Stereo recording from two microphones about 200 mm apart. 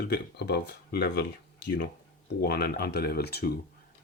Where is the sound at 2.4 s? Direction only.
55° left (ahead or behind).